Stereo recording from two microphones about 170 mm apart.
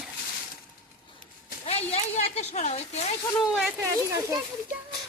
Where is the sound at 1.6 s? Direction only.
40° left (ahead or behind).